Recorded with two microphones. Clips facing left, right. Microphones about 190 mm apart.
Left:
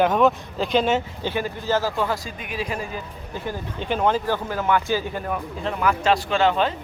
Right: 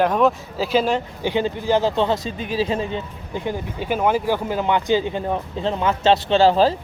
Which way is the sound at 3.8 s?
10° right (ahead or behind).